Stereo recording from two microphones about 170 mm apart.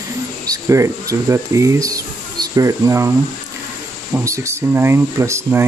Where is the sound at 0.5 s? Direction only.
15° right (ahead or behind).